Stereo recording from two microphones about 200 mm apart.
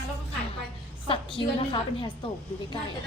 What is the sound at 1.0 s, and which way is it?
A woman's voice, 25° left (ahead or behind).